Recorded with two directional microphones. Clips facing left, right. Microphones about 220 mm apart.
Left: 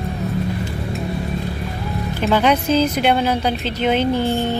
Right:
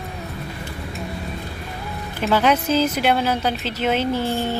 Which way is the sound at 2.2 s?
5° right (ahead or behind).